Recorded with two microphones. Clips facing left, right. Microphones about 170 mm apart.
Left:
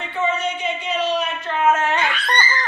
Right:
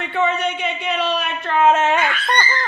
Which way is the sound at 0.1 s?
65° right (ahead or behind).